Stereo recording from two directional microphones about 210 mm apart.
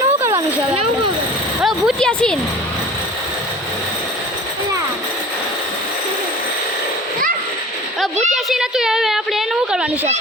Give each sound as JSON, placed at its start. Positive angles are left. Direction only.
{"t": 0.2, "sound": "speech", "side_deg": -20}
{"t": 1.6, "sound": "speech", "side_deg": 0}
{"t": 8.3, "sound": "a woman's voice", "side_deg": 0}